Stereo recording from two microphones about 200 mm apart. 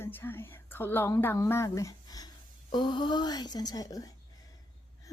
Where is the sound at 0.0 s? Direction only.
10° left (ahead or behind).